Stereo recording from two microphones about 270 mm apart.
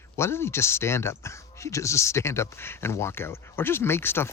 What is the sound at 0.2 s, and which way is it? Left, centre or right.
Speech, centre.